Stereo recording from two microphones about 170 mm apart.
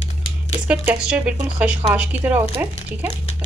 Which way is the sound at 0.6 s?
5° right (ahead or behind).